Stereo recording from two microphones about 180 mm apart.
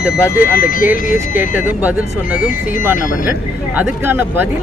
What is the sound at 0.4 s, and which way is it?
Speech, 50° left (ahead or behind).